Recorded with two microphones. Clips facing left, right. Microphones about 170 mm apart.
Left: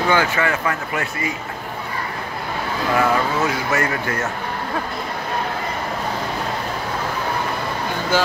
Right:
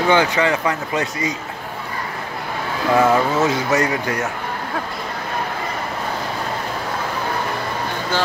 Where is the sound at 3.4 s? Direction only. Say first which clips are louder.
Right 3 dB; 20° right (ahead or behind).